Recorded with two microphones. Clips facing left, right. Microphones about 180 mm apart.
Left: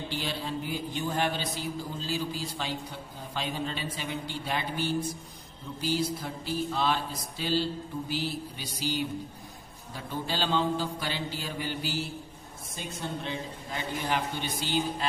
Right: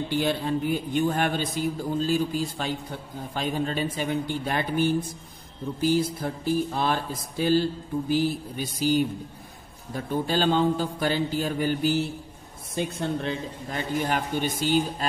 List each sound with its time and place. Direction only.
0.1 s mantra: 55° right (ahead or behind)